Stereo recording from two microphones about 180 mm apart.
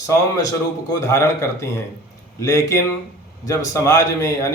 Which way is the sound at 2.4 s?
20° left (ahead or behind).